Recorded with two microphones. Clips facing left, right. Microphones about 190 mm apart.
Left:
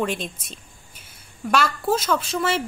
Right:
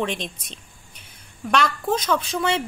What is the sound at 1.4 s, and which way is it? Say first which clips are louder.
Speech: left 1 dB; 5° left (ahead or behind).